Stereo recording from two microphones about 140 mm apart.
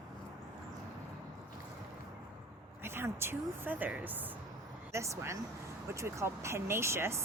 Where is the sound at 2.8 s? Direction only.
15° right (ahead or behind).